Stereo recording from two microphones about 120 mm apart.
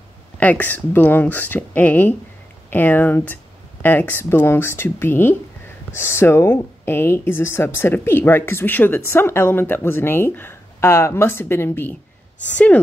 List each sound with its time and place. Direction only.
0.4 s speech: 15° left (ahead or behind)